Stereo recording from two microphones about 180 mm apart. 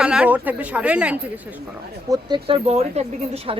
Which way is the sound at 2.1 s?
25° right (ahead or behind).